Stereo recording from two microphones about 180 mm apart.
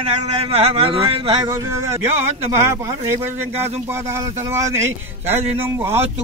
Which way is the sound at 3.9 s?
15° right (ahead or behind).